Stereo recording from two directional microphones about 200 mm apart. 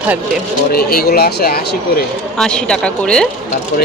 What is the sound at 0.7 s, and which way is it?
Speech, 50° left (ahead or behind).